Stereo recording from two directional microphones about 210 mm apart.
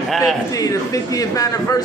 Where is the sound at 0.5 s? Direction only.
15° left (ahead or behind).